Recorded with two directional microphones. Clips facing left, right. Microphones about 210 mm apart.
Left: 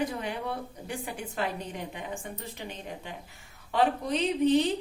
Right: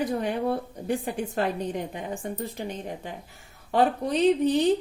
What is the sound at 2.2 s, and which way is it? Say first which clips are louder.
Speech: right 7 dB; 45° right (ahead or behind).